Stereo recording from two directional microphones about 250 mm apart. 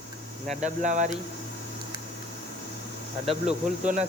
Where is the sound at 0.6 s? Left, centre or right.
Right.